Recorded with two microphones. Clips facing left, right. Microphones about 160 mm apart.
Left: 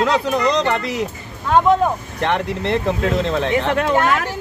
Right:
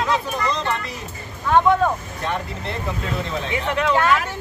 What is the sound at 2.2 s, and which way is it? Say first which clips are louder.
Speech: left 8 dB; 85° left.